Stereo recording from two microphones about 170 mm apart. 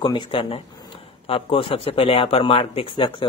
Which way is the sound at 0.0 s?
25° left (ahead or behind).